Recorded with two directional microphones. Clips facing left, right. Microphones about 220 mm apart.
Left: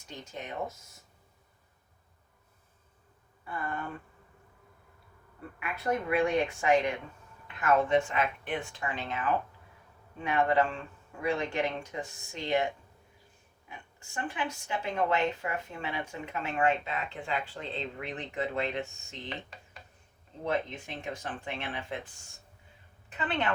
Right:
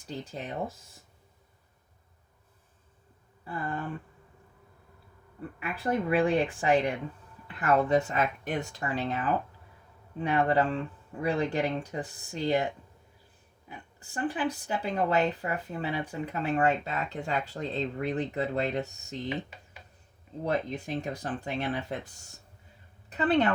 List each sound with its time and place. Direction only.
0.3 s speech: 35° right (ahead or behind)
3.4 s speech: 30° right (ahead or behind)
5.5 s speech: 30° right (ahead or behind)
19.3 s mechanisms: 5° right (ahead or behind)
20.4 s a woman's voice: 35° right (ahead or behind)